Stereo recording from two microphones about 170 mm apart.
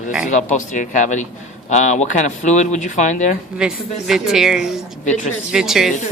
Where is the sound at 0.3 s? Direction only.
45° left (ahead or behind).